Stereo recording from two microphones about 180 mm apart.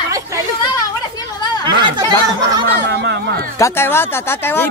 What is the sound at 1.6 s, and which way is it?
Speech, 25° right (ahead or behind).